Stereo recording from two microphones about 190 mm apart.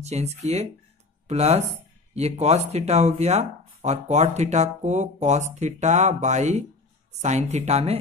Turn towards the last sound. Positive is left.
turn(degrees=-35)  # may be behind; listen again after turning